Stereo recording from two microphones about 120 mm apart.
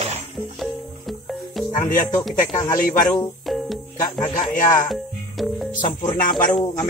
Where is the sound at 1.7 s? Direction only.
80° left.